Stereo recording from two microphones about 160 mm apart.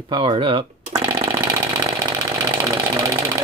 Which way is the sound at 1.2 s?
20° right (ahead or behind).